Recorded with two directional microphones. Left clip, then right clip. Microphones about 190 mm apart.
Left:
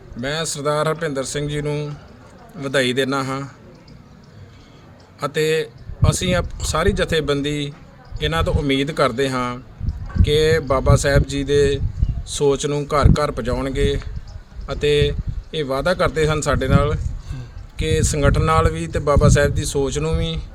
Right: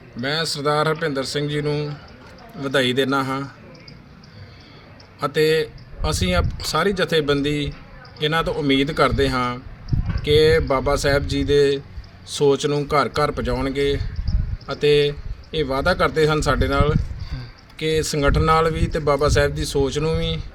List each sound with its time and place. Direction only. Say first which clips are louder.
0.2 s speech: right 1 dB; 5° left (ahead or behind)
5.2 s speech: right 1 dB; 10° left (ahead or behind)